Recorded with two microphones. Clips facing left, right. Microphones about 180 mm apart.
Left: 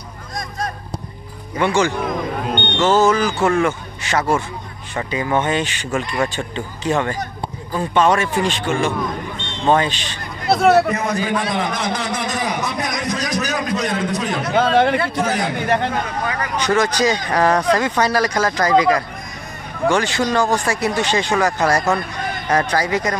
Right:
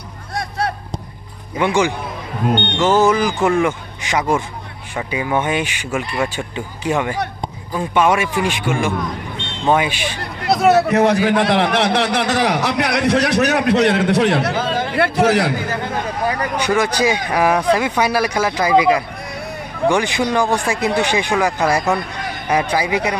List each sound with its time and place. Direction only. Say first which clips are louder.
0.4 s a sound: right 4 dB; 70° right (ahead or behind)
1.6 s speech: even; 15° right (ahead or behind)
10.9 s a man's voice: right 6 dB; 75° right (ahead or behind)
14.5 s speech: left 6 dB; 65° left (ahead or behind)
15.0 s a man's voice: right 5 dB; 75° right (ahead or behind)
16.5 s speech: left 2 dB; 10° right (ahead or behind)